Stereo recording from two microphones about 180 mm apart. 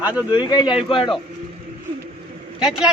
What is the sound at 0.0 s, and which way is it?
Speech, 10° right (ahead or behind).